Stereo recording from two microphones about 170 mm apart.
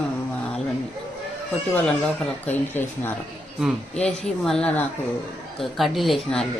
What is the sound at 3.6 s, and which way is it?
A woman's voice, 5° left (ahead or behind).